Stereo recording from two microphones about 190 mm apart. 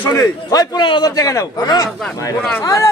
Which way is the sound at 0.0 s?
15° left (ahead or behind).